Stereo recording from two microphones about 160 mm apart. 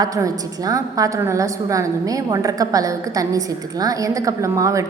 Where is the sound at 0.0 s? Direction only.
20° right (ahead or behind).